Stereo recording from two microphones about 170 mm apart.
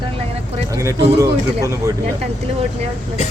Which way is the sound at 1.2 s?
20° right (ahead or behind).